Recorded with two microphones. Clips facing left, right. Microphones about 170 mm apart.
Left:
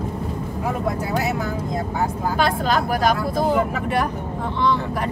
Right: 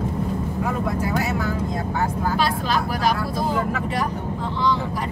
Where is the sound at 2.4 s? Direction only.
50° left (ahead or behind).